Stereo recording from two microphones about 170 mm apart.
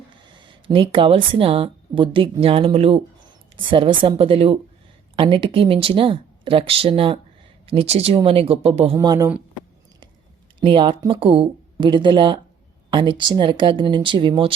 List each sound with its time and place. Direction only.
0.3 s speech: 30° right (ahead or behind)
9.0 s speech: 20° right (ahead or behind)
10.6 s speech: 30° right (ahead or behind)